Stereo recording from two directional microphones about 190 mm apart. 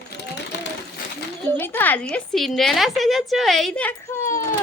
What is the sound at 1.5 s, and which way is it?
A woman's voice, 10° left (ahead or behind).